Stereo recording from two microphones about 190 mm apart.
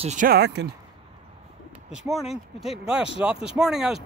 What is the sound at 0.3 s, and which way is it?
Speech, 60° right (ahead or behind).